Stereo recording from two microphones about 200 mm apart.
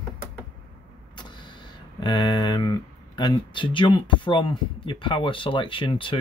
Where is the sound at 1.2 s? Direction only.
20° left (ahead or behind).